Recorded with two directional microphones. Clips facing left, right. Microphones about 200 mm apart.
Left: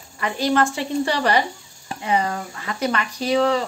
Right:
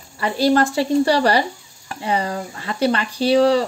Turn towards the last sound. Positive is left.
turn(degrees=-35)  # may be behind; listen again after turning